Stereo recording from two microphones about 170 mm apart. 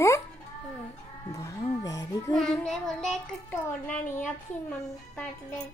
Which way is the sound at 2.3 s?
5° left (ahead or behind).